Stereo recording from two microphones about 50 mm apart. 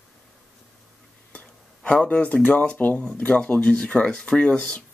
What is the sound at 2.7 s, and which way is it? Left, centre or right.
Speech, left.